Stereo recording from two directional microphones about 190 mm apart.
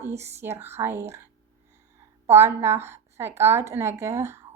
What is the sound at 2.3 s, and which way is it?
A woman's voice, 15° right (ahead or behind).